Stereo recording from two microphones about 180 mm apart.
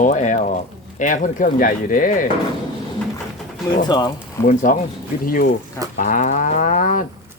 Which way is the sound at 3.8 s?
20° left (ahead or behind).